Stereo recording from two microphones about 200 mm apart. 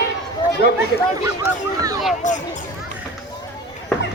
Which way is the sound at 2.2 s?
40° left (ahead or behind).